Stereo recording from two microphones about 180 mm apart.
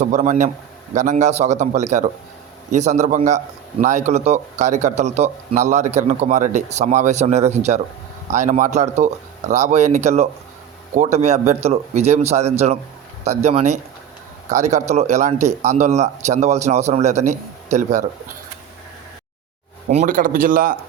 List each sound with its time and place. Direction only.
0.0 s a man's voice: 40° right (ahead or behind)
19.9 s speech: 45° right (ahead or behind)